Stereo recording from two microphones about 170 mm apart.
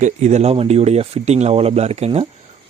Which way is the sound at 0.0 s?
40° right (ahead or behind).